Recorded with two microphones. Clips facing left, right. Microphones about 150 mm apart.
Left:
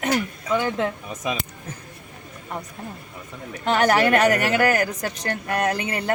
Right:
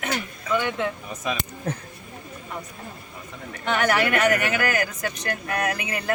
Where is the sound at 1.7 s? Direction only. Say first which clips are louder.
Right 8 dB; 65° right (ahead or behind).